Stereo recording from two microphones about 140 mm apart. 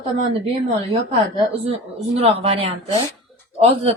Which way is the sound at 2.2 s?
45° right (ahead or behind).